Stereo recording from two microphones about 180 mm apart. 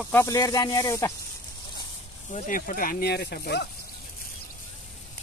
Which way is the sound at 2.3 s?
50° left (ahead or behind).